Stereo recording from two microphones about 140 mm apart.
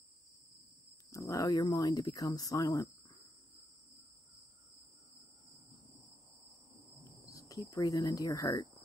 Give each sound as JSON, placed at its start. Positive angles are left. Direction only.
{"t": 1.1, "sound": "speech", "side_deg": 25}
{"t": 7.2, "sound": "speech", "side_deg": 25}